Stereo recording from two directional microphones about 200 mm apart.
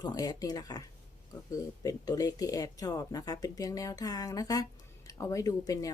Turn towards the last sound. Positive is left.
turn(degrees=15)  # may be behind; listen again after turning